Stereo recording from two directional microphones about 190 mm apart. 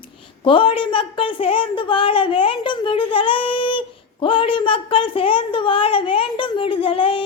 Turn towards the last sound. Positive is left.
turn(degrees=25)  # may be behind; listen again after turning